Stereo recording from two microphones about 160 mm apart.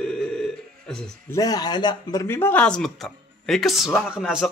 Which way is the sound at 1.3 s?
25° left (ahead or behind).